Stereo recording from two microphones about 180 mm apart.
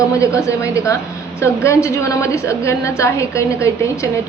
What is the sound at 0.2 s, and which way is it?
A woman's voice, 15° left (ahead or behind).